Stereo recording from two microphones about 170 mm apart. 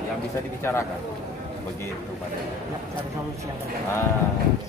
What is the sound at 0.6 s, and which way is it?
Speech, 15° left (ahead or behind).